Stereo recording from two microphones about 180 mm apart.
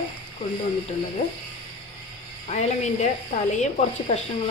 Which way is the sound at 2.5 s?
40° left (ahead or behind).